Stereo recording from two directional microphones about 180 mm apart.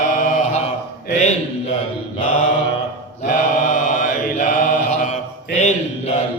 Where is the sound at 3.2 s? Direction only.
45° left (ahead or behind).